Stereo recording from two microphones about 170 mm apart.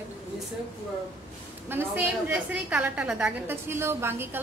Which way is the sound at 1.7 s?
10° right (ahead or behind).